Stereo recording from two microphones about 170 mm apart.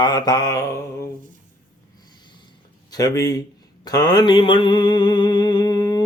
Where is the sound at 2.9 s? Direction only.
20° left (ahead or behind).